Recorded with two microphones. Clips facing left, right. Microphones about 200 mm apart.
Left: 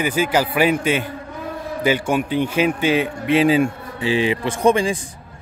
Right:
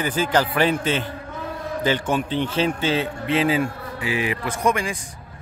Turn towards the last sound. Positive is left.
turn(degrees=30)  # may be behind; listen again after turning